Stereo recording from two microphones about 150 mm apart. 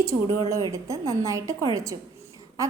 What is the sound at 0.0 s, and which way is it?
A woman's voice, 20° right (ahead or behind).